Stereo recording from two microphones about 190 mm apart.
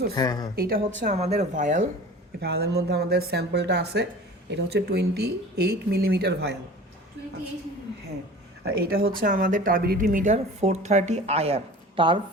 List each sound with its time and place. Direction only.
0.1 s speech: 20° left (ahead or behind)
0.5 s speech: 50° right (ahead or behind)
1.0 s speech: 35° right (ahead or behind)
2.4 s speech: 55° right (ahead or behind)
8.6 s speech: 55° right (ahead or behind); by 12.2 s 25° right (ahead or behind)